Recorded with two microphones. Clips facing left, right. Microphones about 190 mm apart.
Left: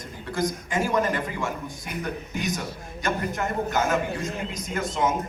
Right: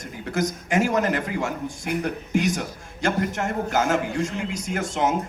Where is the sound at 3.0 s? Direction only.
85° right.